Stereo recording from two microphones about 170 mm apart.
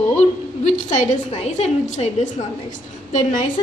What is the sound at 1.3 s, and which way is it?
A woman's voice, 40° left (ahead or behind).